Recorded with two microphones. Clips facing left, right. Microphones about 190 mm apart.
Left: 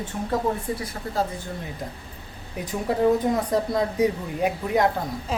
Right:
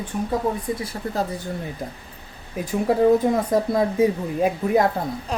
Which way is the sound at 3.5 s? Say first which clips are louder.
Right 3 dB; 25° right (ahead or behind).